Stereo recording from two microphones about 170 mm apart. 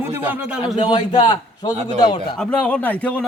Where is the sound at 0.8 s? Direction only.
30° left (ahead or behind).